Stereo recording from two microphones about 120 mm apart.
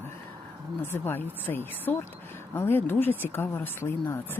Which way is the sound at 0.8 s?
20° left (ahead or behind).